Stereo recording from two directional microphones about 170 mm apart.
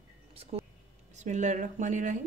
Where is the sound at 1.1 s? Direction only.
45° right (ahead or behind).